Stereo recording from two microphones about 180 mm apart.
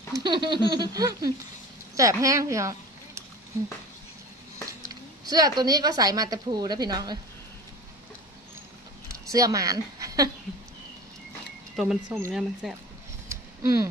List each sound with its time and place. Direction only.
0.1 s a woman's voice: 25° right (ahead or behind)
5.2 s a sound: 20° right (ahead or behind)
5.6 s a woman's voice: 20° right (ahead or behind)
9.1 s a woman's voice: 20° right (ahead or behind)
11.7 s speech: 5° right (ahead or behind)
13.3 s a sound: 15° right (ahead or behind)